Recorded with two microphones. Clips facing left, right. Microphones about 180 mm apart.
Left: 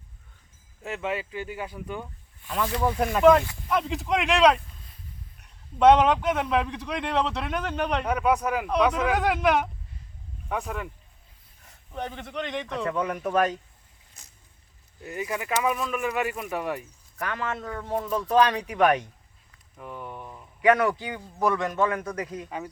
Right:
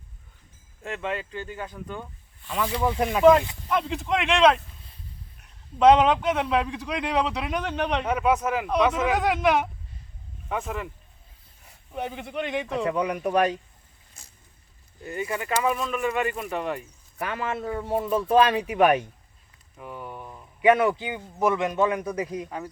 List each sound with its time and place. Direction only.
0.8 s speech: 5° left (ahead or behind)
2.6 s a man's voice: 10° right (ahead or behind)
5.8 s a man's voice: 5° left (ahead or behind)
10.5 s a man's voice: centre (ahead or behind)
11.9 s a man's voice: 5° right (ahead or behind)
15.0 s a man's voice: centre (ahead or behind)
17.2 s a man's voice: 15° right (ahead or behind)
19.7 s a sound: 5° right (ahead or behind)
20.6 s a man's voice: 20° right (ahead or behind)
22.4 s a man's voice: 5° left (ahead or behind)